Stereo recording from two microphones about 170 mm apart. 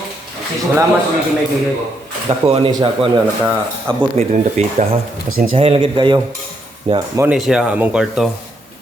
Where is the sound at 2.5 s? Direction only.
35° right (ahead or behind).